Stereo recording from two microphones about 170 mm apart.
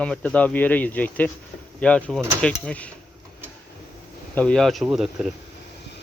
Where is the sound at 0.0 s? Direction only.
5° left (ahead or behind).